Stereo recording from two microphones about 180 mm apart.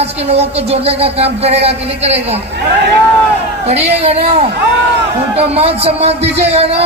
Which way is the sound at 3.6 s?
35° right (ahead or behind).